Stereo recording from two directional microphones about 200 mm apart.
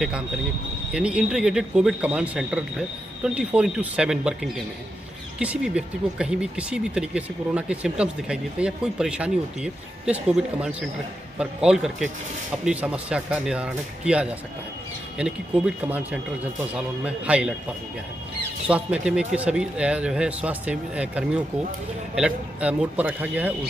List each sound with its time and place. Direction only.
0.9 s speech: 5° right (ahead or behind)
18.7 s a man's voice: 5° right (ahead or behind)